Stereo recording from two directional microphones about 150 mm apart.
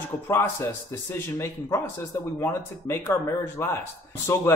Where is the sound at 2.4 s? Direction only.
20° left (ahead or behind).